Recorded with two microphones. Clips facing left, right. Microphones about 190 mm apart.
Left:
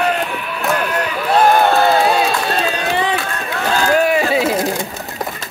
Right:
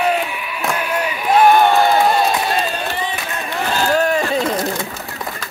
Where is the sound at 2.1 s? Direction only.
90° left.